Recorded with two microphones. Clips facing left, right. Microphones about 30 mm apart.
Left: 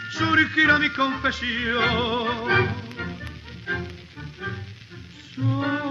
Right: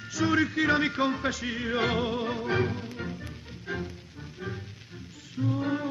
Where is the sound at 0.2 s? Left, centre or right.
Left.